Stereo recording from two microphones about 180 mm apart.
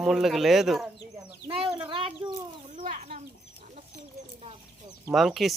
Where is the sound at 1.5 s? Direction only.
30° right (ahead or behind).